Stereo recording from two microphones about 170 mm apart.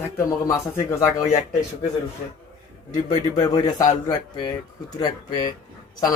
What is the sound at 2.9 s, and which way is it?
Speech, 20° left (ahead or behind).